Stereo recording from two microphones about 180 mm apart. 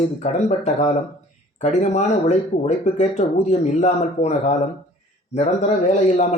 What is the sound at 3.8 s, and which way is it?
A man's voice, 40° left (ahead or behind).